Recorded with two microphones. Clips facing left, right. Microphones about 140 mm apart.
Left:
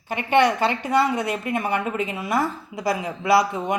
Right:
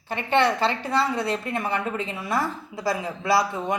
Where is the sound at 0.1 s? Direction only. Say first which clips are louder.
Left 3 dB; 15° left (ahead or behind).